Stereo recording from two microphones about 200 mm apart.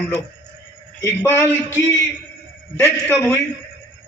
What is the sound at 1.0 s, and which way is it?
Speech, 10° left (ahead or behind).